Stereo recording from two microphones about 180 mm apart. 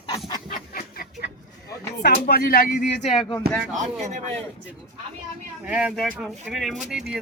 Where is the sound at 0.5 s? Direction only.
55° left (ahead or behind).